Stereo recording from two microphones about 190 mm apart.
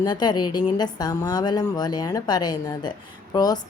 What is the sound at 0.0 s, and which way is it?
A woman's voice, 20° left (ahead or behind).